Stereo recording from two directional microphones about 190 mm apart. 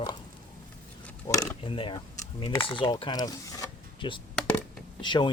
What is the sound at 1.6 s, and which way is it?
Speech, 30° left (ahead or behind).